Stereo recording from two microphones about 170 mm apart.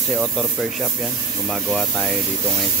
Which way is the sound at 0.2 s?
Centre (ahead or behind).